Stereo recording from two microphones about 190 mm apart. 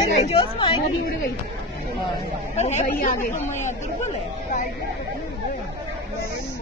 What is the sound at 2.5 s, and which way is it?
Speech, 35° left (ahead or behind).